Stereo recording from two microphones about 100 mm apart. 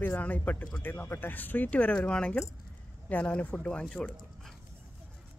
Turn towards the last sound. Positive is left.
turn(degrees=10)  # may be behind; listen again after turning